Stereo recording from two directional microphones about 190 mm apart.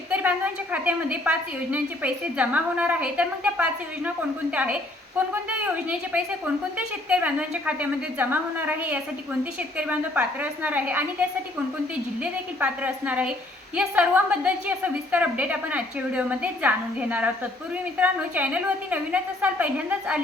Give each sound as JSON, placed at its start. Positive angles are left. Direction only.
{"t": 0.1, "sound": "a woman's voice", "side_deg": -10}